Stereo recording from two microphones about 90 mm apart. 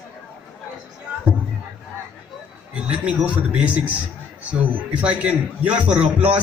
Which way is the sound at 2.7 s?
15° right (ahead or behind).